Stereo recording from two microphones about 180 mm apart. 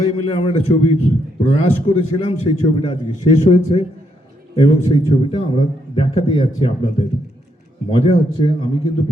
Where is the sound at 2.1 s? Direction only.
35° left (ahead or behind).